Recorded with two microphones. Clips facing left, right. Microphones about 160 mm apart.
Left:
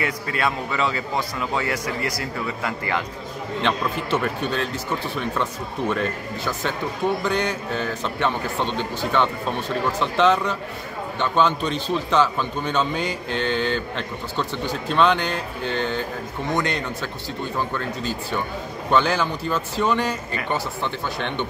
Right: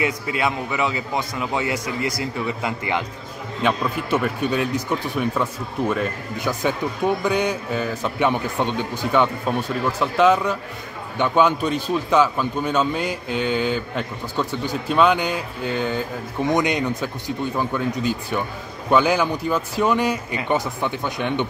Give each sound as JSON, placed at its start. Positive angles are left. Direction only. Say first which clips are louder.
{"t": 0.0, "sound": "a man's voice", "louder": "right 2 dB", "side_deg": -15}
{"t": 3.6, "sound": "a man's voice", "louder": "right 3 dB", "side_deg": -10}